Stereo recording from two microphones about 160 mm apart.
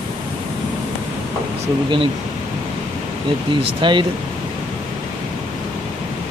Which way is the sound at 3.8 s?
30° right (ahead or behind).